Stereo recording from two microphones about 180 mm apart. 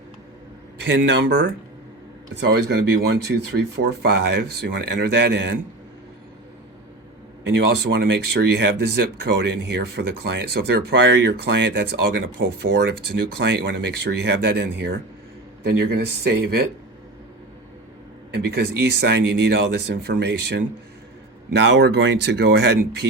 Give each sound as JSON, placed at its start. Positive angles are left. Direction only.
{"t": 0.8, "sound": "speech", "side_deg": -75}
{"t": 2.6, "sound": "speech", "side_deg": -65}
{"t": 7.8, "sound": "speech", "side_deg": -65}
{"t": 13.4, "sound": "speech", "side_deg": -80}
{"t": 15.6, "sound": "speech", "side_deg": -60}
{"t": 18.8, "sound": "speech", "side_deg": -65}